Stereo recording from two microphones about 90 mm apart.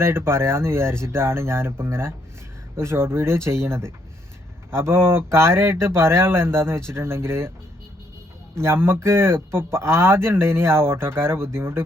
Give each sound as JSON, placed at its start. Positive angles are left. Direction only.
{"t": 0.0, "sound": "speech", "side_deg": -30}
{"t": 8.5, "sound": "speech", "side_deg": -30}